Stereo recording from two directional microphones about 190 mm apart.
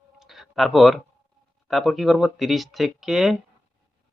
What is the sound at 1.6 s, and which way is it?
Speech, centre (ahead or behind).